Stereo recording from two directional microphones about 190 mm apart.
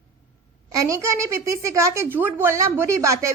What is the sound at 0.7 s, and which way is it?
A woman's voice, 15° right (ahead or behind).